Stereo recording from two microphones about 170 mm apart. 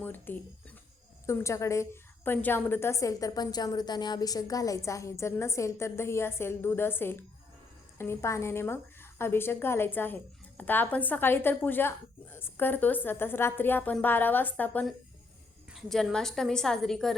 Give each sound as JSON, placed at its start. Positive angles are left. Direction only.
{"t": 0.0, "sound": "a woman's voice", "side_deg": 10}